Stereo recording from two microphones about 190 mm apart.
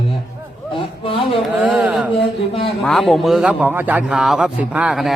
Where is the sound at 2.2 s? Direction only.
30° left (ahead or behind).